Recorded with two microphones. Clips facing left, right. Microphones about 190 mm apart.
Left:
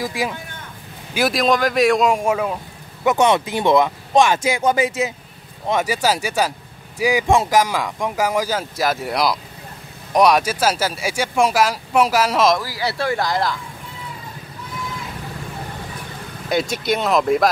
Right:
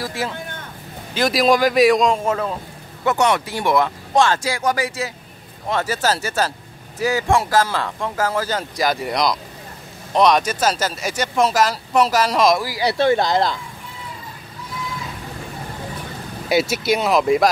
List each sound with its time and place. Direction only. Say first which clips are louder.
0.0 s speech: left 2 dB; 15° left (ahead or behind)
1.3 s a man's voice: right 4 dB; 5° right (ahead or behind)
3.1 s speech: left 2 dB; 20° left (ahead or behind)
12.5 s speech: right 4 dB; 15° right (ahead or behind)
16.4 s a man's voice: right 2 dB; 5° right (ahead or behind)